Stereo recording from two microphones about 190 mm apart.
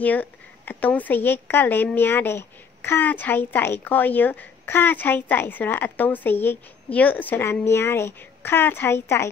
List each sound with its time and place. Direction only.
0.0 s speech: 10° left (ahead or behind)